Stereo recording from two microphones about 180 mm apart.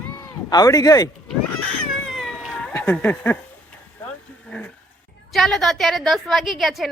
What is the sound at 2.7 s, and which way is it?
Speech, 10° left (ahead or behind).